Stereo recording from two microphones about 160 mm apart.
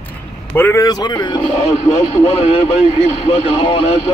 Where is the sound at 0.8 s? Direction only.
25° left (ahead or behind).